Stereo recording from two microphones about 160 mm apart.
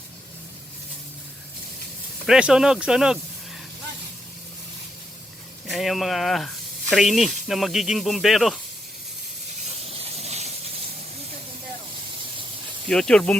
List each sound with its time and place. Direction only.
2.2 s speech: 5° right (ahead or behind)
5.6 s speech: centre (ahead or behind)
9.8 s a sound: 40° right (ahead or behind)
12.9 s speech: 5° left (ahead or behind)